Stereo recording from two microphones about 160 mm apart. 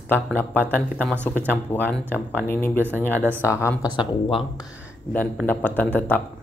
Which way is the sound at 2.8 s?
10° right (ahead or behind).